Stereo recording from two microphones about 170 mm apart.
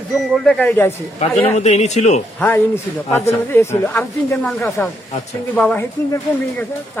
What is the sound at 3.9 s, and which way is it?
Speech, 15° left (ahead or behind).